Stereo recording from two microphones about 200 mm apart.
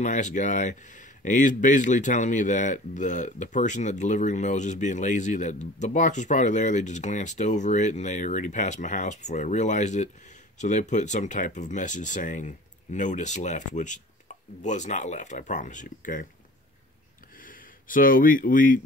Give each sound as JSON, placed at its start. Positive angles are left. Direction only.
{"t": 0.0, "sound": "speech", "side_deg": 40}
{"t": 17.4, "sound": "speech", "side_deg": 45}